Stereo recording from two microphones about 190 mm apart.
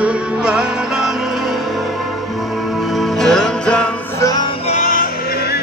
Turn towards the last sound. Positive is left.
turn(degrees=45)  # may be behind; listen again after turning